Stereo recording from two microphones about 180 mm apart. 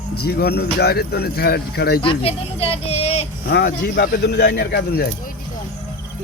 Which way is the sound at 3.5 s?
60° left (ahead or behind).